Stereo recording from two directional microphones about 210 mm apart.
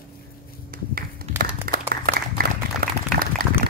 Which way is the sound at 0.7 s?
45° right (ahead or behind).